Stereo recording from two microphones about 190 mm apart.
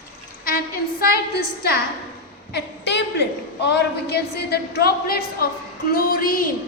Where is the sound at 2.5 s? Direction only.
65° left (ahead or behind).